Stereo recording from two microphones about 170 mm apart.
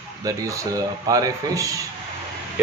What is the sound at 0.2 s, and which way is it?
A man's voice, 20° right (ahead or behind).